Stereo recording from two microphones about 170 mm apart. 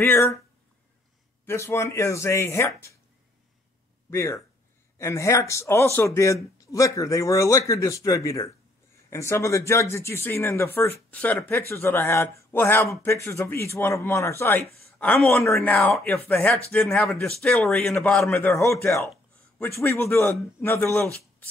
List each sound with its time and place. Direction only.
0.0 s speech: 15° left (ahead or behind)
1.4 s speech: 15° left (ahead or behind)
4.1 s speech: 15° left (ahead or behind)
15.0 s speech: 5° left (ahead or behind)
18.8 s speech: 15° left (ahead or behind)